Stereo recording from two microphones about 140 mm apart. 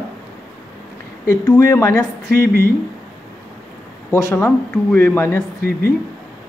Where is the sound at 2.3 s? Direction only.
90° right.